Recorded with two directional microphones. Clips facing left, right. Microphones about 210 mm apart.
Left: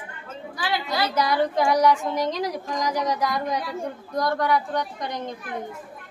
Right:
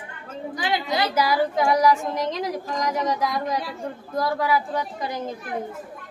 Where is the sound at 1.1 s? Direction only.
5° right (ahead or behind).